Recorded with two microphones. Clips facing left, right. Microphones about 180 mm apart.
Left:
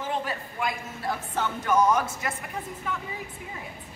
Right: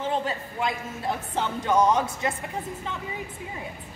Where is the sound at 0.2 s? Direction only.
25° right (ahead or behind).